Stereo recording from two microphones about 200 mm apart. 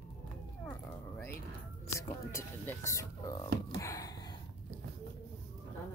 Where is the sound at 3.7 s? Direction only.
15° left (ahead or behind).